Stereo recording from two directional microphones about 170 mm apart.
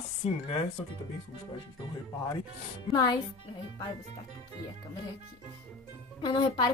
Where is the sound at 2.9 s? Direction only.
25° left (ahead or behind).